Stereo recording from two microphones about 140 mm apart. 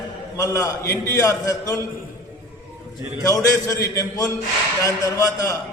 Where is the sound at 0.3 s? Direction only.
25° left (ahead or behind).